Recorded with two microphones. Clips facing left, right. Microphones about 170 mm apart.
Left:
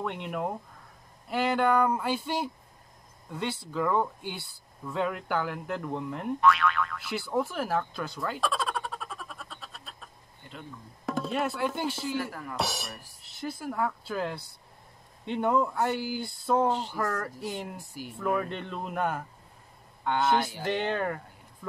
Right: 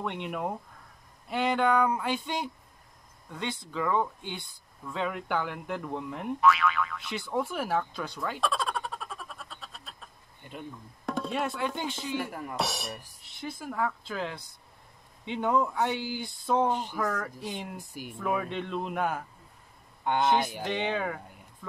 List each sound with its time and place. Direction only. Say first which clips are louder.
0.0 s speech: left 1 dB; centre (ahead or behind)
1.3 s a sound: left 1 dB; 5° left (ahead or behind)
4.8 s speech: left 2 dB; 5° left (ahead or behind)
10.4 s speech: right 3 dB; 15° right (ahead or behind)
11.1 s speech: left 1 dB; centre (ahead or behind)
12.2 s speech: even; 20° right (ahead or behind)
12.5 s speech: even; centre (ahead or behind)
16.6 s speech: left 1 dB; 15° right (ahead or behind)
16.9 s speech: even; 5° left (ahead or behind)
17.7 s speech: even; 15° right (ahead or behind)
20.1 s speech: even; 15° right (ahead or behind)
20.6 s speech: left 1 dB; 5° left (ahead or behind)